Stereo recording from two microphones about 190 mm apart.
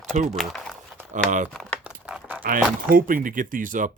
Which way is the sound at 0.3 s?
Centre (ahead or behind).